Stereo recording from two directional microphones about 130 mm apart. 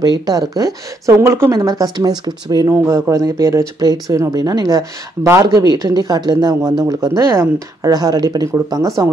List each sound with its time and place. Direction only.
0.0 s speech: 30° right (ahead or behind)
2.7 s speech: 20° right (ahead or behind)